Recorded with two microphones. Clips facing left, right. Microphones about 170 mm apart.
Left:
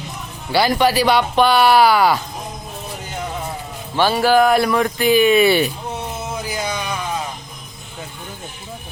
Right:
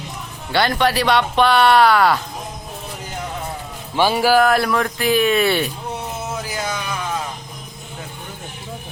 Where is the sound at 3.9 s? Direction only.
10° right (ahead or behind).